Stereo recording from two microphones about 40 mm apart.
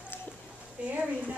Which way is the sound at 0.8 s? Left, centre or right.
Right.